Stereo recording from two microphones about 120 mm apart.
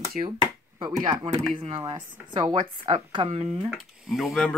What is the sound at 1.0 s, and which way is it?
Speech, 75° right (ahead or behind).